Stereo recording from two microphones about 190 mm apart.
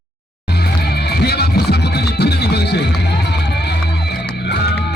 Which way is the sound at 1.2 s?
55° left (ahead or behind).